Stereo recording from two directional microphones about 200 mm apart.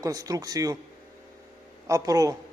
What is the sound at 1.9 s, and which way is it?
Speech, 15° right (ahead or behind).